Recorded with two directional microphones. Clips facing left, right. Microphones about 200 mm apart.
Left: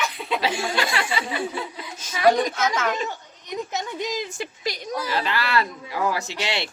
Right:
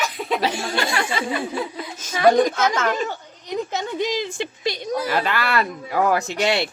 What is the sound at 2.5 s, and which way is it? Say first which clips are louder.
Speech: right 3 dB; 50° right (ahead or behind).